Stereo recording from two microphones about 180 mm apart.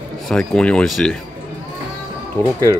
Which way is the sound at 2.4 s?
15° left (ahead or behind).